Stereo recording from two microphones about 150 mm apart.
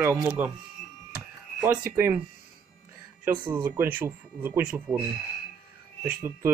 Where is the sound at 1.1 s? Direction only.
15° right (ahead or behind).